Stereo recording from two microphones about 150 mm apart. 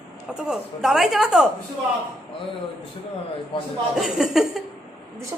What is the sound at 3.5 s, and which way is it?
Speech, 35° left (ahead or behind).